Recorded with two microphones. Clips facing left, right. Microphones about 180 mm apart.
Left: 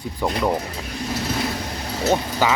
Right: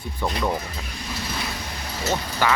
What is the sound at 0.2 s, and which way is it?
Speech, 15° left (ahead or behind).